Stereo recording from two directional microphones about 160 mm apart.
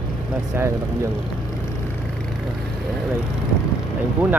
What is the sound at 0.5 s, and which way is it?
Speech, 15° right (ahead or behind).